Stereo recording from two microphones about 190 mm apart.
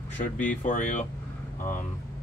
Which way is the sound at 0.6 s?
40° left (ahead or behind).